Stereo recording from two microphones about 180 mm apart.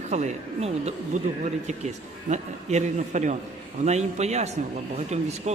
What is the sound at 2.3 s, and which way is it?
A man's voice, 40° right (ahead or behind).